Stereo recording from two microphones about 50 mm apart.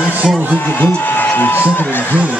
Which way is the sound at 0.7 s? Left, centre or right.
Left.